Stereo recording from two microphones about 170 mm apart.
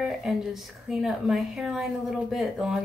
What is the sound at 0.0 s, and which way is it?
Speech, 5° right (ahead or behind).